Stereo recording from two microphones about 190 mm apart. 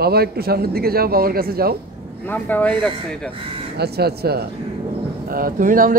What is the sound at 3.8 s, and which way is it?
Speech, 55° right (ahead or behind).